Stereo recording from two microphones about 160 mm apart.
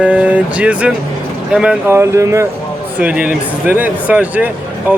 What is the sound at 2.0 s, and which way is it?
Speech, 20° right (ahead or behind).